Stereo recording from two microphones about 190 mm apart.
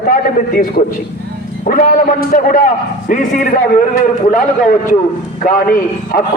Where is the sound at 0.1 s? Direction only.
45° left (ahead or behind).